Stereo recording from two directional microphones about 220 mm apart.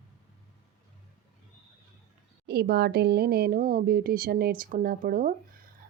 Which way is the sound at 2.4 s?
45° right (ahead or behind).